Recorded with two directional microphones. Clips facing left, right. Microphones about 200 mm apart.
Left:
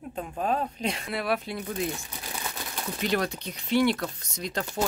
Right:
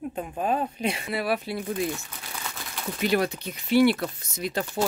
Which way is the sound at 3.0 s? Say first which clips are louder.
Right 4 dB; 5° right (ahead or behind).